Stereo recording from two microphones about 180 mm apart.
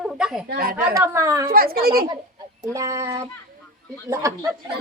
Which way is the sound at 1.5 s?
55° right (ahead or behind).